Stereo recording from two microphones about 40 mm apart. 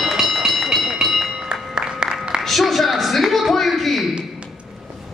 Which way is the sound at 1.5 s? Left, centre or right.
Right.